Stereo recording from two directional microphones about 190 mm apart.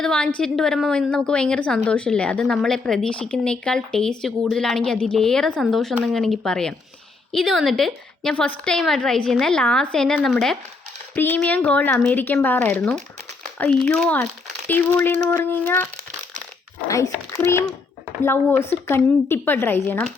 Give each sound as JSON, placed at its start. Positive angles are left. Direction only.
{"t": 0.0, "sound": "a woman's voice", "side_deg": 5}
{"t": 16.9, "sound": "speech", "side_deg": 15}